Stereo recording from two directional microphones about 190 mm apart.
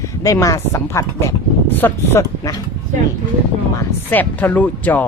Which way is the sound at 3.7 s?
10° left (ahead or behind).